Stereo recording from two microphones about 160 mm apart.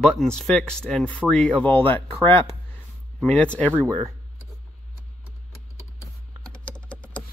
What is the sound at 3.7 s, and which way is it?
Speech, 15° right (ahead or behind).